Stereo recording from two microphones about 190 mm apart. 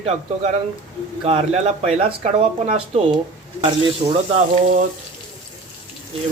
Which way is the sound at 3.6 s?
30° right (ahead or behind).